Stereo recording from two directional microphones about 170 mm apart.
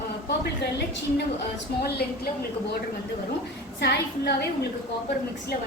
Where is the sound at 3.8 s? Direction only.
70° left (ahead or behind).